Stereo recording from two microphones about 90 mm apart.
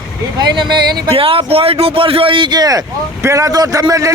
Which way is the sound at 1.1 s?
90° right.